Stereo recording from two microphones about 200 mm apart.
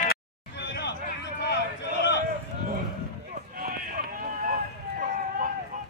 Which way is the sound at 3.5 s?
45° right (ahead or behind).